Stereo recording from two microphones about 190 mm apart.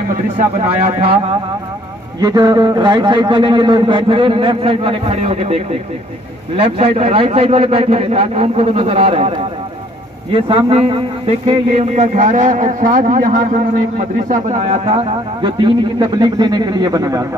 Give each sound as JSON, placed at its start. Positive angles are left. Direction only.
{"t": 2.1, "sound": "a man's voice", "side_deg": -20}
{"t": 10.3, "sound": "a man's voice", "side_deg": -30}